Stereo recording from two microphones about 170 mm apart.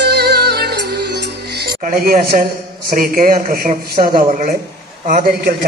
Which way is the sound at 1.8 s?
55° right (ahead or behind).